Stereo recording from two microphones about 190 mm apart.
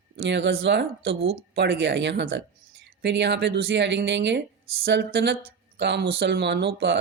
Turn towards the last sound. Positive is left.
turn(degrees=-65)  # may be behind; listen again after turning